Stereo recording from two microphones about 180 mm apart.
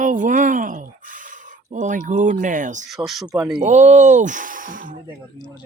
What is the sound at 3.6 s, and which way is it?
Speech, 40° right (ahead or behind).